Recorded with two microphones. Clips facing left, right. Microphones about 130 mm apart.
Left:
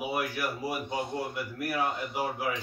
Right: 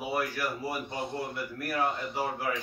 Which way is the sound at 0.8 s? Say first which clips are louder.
Left 2 dB; centre (ahead or behind).